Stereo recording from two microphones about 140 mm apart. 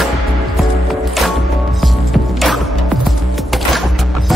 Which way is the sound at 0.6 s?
Centre (ahead or behind).